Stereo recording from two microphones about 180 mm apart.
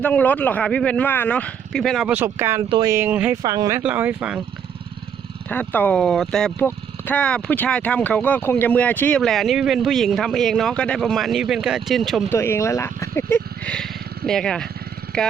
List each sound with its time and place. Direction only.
0.0 s speech: 10° left (ahead or behind); by 2.6 s 15° right (ahead or behind)
2.6 s speech: 25° right (ahead or behind)
2.9 s speech: 10° right (ahead or behind)
3.4 s speech: 20° right (ahead or behind)
5.5 s speech: 10° left (ahead or behind)
12.3 s speech: 15° left (ahead or behind)